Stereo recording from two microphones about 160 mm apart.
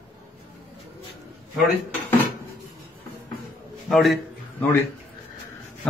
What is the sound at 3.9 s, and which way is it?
Speech, centre (ahead or behind).